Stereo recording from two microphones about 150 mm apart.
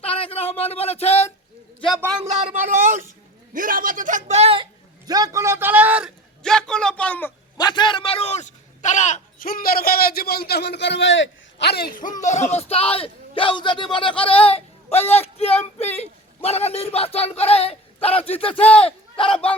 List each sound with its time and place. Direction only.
0.0 s speech: 40° left (ahead or behind)
2.3 s a man's voice: 60° right (ahead or behind); by 6.1 s 10° right (ahead or behind)
6.4 s a man's voice: 5° left (ahead or behind)
7.6 s a man's voice: 30° left (ahead or behind); by 11.9 s 90° left
12.2 s a man's voice: 50° left (ahead or behind)
18.6 s speech: 10° left (ahead or behind)
18.9 s speech: 35° left (ahead or behind)